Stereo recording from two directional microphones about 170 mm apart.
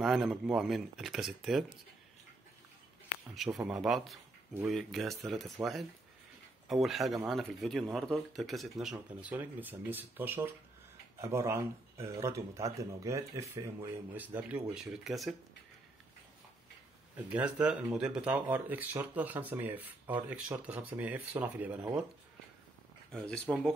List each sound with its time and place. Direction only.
0.0 s speech: centre (ahead or behind)
3.3 s speech: centre (ahead or behind)
17.3 s speech: 5° right (ahead or behind)
23.1 s speech: 5° left (ahead or behind)